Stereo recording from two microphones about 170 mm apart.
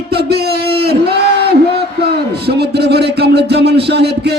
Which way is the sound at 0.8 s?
70° right (ahead or behind).